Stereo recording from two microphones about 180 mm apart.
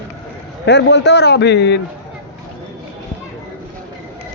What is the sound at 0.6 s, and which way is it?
A man's voice, 75° left (ahead or behind).